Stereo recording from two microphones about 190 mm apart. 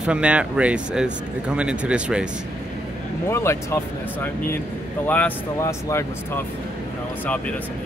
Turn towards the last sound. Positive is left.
turn(degrees=15)  # may be behind; listen again after turning